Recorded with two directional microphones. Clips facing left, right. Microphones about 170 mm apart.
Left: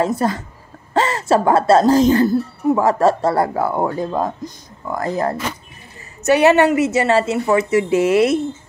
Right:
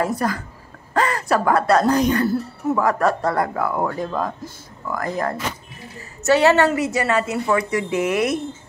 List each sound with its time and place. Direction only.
0.2 s speech: 25° left (ahead or behind)